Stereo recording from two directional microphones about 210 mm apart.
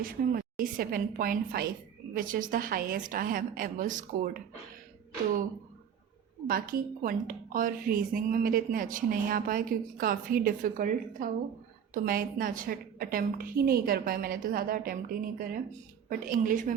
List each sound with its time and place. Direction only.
0.0 s a woman's voice: 40° right (ahead or behind)
6.5 s a woman's voice: 45° right (ahead or behind)